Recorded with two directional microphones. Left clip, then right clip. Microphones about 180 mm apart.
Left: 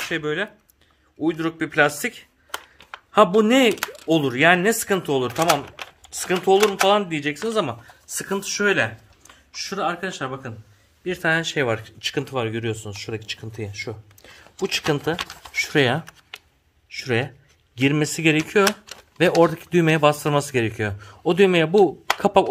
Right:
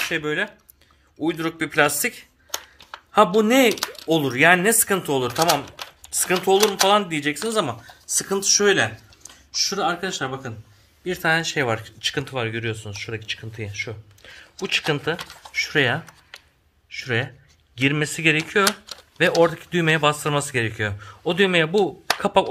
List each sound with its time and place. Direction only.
0.1 s speech: 35° left (ahead or behind); by 10.5 s 20° left (ahead or behind)
11.1 s a man's voice: 35° left (ahead or behind)